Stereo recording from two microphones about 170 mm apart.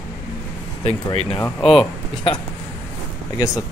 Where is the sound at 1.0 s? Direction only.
30° left (ahead or behind).